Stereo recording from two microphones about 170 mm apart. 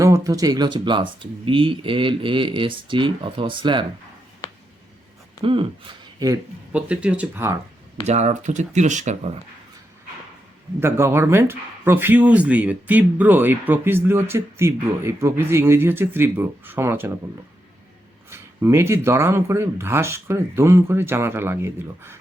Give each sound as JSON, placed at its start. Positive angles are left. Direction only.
{"t": 0.0, "sound": "speech", "side_deg": -20}
{"t": 5.4, "sound": "speech", "side_deg": -30}
{"t": 6.7, "sound": "speech", "side_deg": -5}
{"t": 8.0, "sound": "speech", "side_deg": -40}
{"t": 10.8, "sound": "speech", "side_deg": -15}
{"t": 18.3, "sound": "speech", "side_deg": -15}